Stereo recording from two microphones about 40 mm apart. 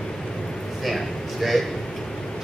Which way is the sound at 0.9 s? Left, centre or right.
Centre.